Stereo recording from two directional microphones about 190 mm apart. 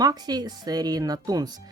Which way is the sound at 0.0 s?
20° right (ahead or behind).